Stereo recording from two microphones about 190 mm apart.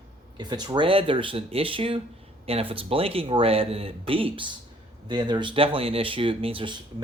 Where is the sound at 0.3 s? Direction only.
20° right (ahead or behind).